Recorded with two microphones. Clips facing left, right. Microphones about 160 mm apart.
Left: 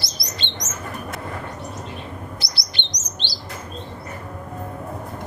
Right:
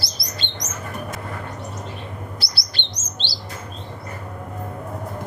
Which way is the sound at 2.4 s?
20° left (ahead or behind).